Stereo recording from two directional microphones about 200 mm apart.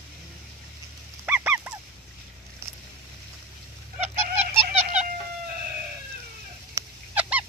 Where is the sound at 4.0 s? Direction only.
35° right (ahead or behind).